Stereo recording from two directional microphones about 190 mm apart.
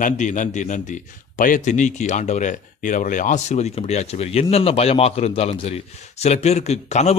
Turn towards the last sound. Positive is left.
turn(degrees=35)  # may be behind; listen again after turning